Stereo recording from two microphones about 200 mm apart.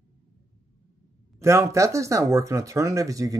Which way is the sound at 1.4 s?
15° right (ahead or behind).